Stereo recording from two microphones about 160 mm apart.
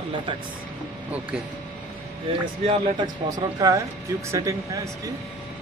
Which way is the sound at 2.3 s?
35° right (ahead or behind).